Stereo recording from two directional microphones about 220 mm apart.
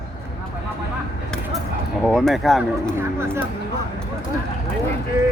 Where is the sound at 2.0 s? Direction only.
Centre (ahead or behind).